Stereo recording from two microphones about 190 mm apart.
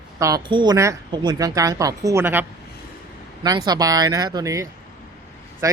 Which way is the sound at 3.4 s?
20° right (ahead or behind).